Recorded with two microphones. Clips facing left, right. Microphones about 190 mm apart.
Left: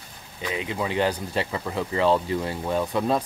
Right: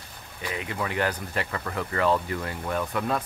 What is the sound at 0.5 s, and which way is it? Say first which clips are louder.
Speech: left 3 dB; 20° left (ahead or behind).